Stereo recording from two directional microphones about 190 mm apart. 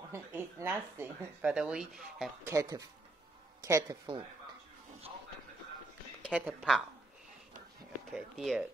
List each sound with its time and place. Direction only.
0.1 s speech: 15° right (ahead or behind)
2.4 s speech: 15° right (ahead or behind)
6.2 s speech: 5° right (ahead or behind)
8.1 s speech: 5° right (ahead or behind)